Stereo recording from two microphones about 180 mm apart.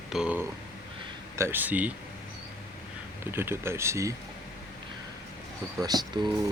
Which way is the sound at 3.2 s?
10° right (ahead or behind).